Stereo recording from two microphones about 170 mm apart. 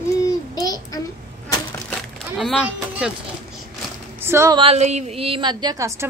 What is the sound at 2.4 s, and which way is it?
Speech, centre (ahead or behind).